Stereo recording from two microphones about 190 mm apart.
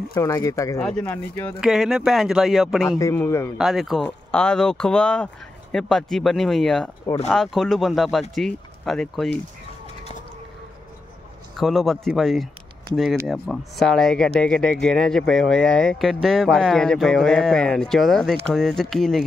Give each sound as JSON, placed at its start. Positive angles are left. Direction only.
{"t": 0.1, "sound": "speech", "side_deg": 15}
{"t": 1.6, "sound": "speech", "side_deg": 0}
{"t": 3.0, "sound": "speech", "side_deg": 15}
{"t": 3.5, "sound": "speech", "side_deg": 0}
{"t": 11.5, "sound": "speech", "side_deg": 0}